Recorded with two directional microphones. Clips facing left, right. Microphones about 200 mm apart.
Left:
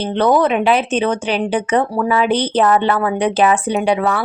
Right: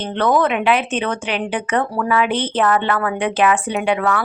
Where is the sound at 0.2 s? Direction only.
20° left (ahead or behind).